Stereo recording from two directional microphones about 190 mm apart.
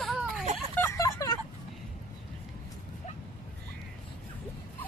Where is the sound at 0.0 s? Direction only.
Centre (ahead or behind).